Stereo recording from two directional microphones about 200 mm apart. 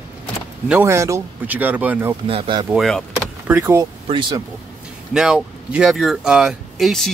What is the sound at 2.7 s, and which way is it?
Speech, centre (ahead or behind).